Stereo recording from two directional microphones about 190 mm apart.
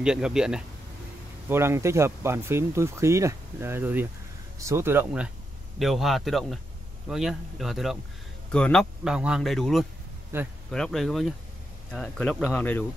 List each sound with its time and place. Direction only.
0.0 s speech: 5° right (ahead or behind)
10.3 s speech: 10° right (ahead or behind)
10.7 s speech: 5° left (ahead or behind)